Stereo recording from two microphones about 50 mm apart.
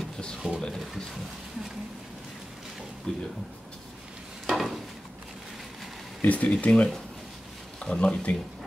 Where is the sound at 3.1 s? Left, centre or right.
Centre.